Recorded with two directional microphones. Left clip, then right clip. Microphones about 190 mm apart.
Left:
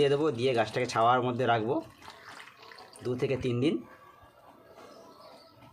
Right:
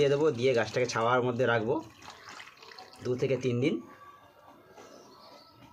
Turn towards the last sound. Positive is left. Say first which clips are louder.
# even
turn(degrees=15)  # may be behind; listen again after turning